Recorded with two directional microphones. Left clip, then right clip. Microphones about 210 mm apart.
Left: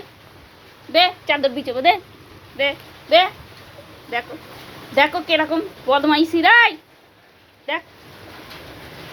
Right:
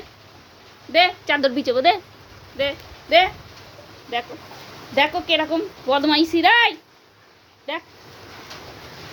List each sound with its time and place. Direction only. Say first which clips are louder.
0.9 s a woman's voice: left 1 dB; 20° right (ahead or behind)
1.4 s a woman's voice: right 1 dB; 35° right (ahead or behind)
2.6 s a woman's voice: left 3 dB; 15° right (ahead or behind)